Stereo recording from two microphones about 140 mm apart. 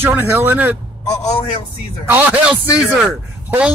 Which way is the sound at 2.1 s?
10° right (ahead or behind).